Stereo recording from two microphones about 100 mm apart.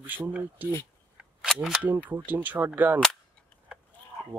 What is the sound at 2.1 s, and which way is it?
Speech, 20° right (ahead or behind).